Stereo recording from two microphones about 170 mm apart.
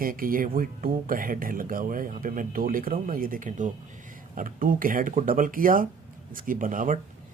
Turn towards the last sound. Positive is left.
turn(degrees=-50)  # may be behind; listen again after turning